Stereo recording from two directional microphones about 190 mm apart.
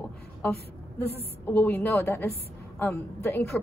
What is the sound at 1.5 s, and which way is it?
A woman's voice, 10° left (ahead or behind).